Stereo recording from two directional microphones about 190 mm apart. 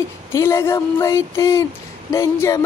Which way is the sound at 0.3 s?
15° left (ahead or behind).